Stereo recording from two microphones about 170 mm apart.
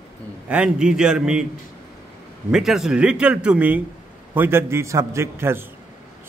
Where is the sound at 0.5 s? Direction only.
5° right (ahead or behind).